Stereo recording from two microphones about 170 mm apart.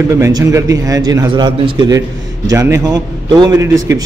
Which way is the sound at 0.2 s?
20° right (ahead or behind).